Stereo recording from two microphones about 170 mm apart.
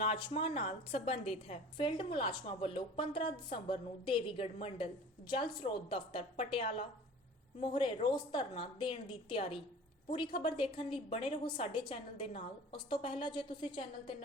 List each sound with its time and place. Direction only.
0.0 s a woman's voice: 30° left (ahead or behind)
5.9 s a woman's voice: 35° left (ahead or behind)